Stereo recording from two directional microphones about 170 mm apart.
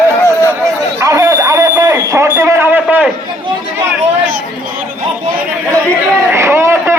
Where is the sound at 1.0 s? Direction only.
20° right (ahead or behind).